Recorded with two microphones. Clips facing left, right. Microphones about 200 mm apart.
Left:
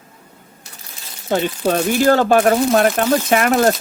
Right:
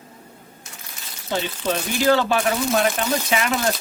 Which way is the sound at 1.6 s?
50° left (ahead or behind).